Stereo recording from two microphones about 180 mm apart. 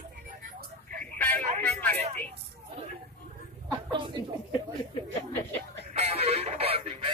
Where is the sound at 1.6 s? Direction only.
10° left (ahead or behind).